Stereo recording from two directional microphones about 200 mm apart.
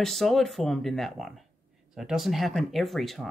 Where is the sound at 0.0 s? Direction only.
Centre (ahead or behind).